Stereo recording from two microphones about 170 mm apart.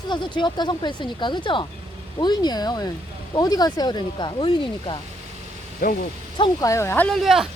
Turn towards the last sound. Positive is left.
turn(degrees=0)  # may be behind; listen again after turning